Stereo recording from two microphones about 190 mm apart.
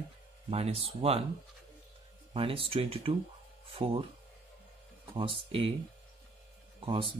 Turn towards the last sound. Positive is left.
turn(degrees=-30)  # may be behind; listen again after turning